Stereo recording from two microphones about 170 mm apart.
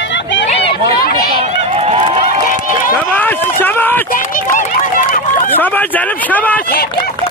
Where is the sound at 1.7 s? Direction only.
35° right (ahead or behind).